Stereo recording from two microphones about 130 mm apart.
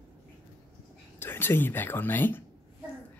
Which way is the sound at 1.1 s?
15° left (ahead or behind).